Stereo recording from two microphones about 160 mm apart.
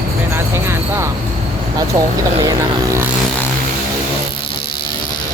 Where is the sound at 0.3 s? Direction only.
15° right (ahead or behind).